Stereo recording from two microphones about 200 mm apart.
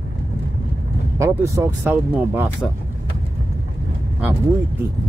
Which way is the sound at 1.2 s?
15° right (ahead or behind).